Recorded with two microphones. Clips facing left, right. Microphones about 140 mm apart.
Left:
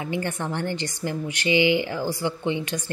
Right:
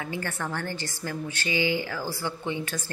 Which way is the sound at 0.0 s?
20° left (ahead or behind).